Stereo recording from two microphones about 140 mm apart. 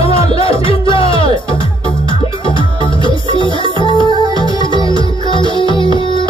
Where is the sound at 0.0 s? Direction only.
40° left (ahead or behind).